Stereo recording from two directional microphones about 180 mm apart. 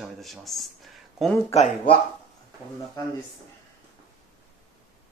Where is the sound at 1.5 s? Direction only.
35° left (ahead or behind).